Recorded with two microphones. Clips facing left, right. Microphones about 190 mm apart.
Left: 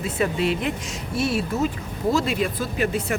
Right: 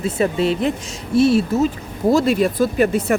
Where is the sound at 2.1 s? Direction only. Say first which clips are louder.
Right 9 dB; 40° right (ahead or behind).